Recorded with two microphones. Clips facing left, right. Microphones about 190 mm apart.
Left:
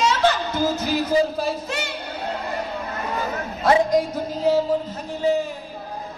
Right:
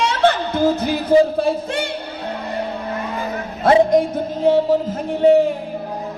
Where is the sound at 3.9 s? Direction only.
55° right (ahead or behind).